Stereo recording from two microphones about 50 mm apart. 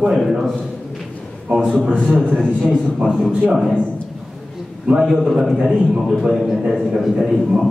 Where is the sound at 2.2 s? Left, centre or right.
Centre.